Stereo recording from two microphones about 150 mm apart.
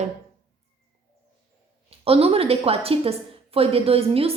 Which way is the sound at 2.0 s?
40° right (ahead or behind).